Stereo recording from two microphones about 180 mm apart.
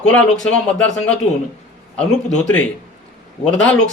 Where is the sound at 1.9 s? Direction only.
5° left (ahead or behind).